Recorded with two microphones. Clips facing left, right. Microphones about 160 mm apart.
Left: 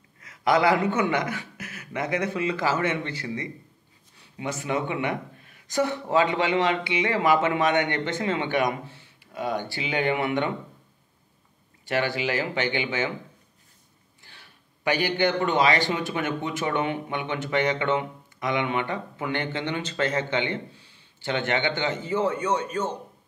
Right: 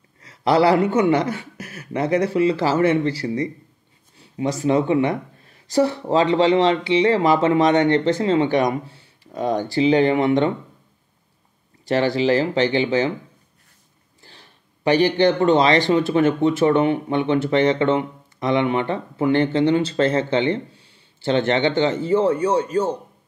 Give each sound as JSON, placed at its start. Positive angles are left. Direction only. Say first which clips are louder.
{"t": 0.2, "sound": "speech", "louder": "right 5 dB", "side_deg": -30}
{"t": 11.8, "sound": "speech", "louder": "right 7 dB", "side_deg": -35}
{"t": 14.2, "sound": "speech", "louder": "right 5 dB", "side_deg": -35}